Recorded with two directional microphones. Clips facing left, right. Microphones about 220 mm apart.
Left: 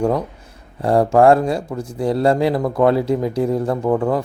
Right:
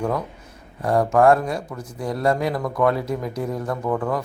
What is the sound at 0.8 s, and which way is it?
A man's voice, 30° left (ahead or behind).